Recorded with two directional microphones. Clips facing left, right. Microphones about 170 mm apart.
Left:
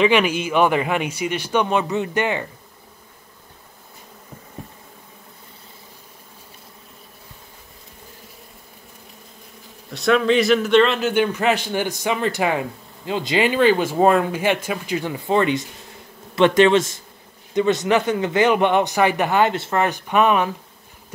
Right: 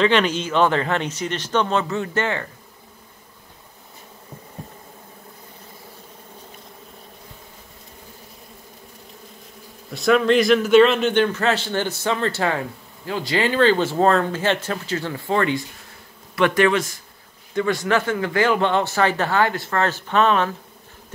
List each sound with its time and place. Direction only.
0.0 s speech: 10° left (ahead or behind)
9.8 s speech: centre (ahead or behind)
11.3 s speech: 15° left (ahead or behind)